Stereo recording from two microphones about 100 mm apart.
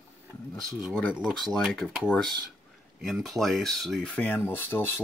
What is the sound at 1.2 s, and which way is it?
Speech, centre (ahead or behind).